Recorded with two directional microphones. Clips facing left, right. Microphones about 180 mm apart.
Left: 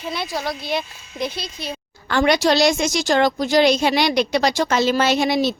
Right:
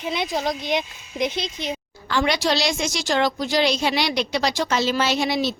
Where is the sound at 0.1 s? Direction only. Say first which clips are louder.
Right 2 dB; 20° right (ahead or behind).